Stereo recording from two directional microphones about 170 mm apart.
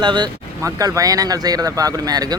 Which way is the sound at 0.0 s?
25° right (ahead or behind).